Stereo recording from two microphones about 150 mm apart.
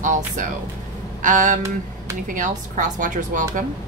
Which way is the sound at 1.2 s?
60° right (ahead or behind).